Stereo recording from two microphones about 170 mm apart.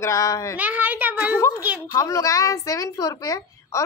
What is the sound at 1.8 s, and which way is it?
A woman's voice, 20° left (ahead or behind).